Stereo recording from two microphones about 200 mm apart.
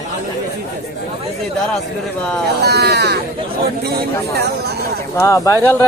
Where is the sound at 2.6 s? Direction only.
55° right (ahead or behind).